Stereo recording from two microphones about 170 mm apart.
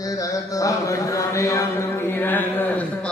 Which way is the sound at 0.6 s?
20° left (ahead or behind).